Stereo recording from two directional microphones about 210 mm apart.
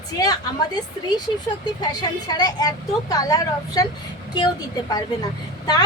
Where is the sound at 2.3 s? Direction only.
20° left (ahead or behind).